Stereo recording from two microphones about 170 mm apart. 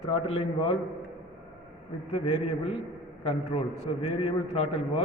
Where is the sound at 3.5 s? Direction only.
30° left (ahead or behind).